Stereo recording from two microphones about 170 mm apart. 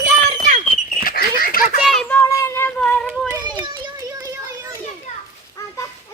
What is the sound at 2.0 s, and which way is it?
Child singing, 10° left (ahead or behind).